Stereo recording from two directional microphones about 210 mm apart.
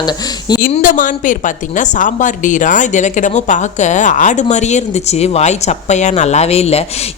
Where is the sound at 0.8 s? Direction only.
40° left (ahead or behind).